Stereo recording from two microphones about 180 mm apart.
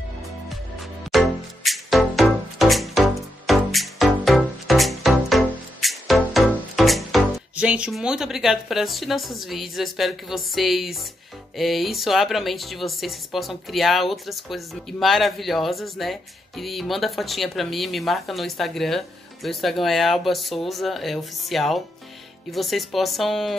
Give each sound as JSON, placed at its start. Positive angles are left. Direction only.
{"t": 1.1, "sound": "music", "side_deg": 0}
{"t": 11.5, "sound": "speech", "side_deg": 0}